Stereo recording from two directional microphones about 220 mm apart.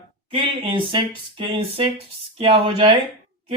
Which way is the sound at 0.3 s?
25° right (ahead or behind).